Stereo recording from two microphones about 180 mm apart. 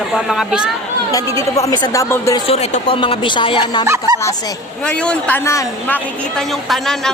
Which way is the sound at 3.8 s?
15° right (ahead or behind).